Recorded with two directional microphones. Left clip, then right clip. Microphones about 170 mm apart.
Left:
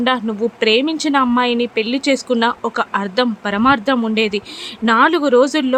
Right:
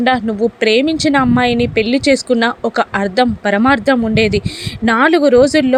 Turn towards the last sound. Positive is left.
turn(degrees=-10)  # may be behind; listen again after turning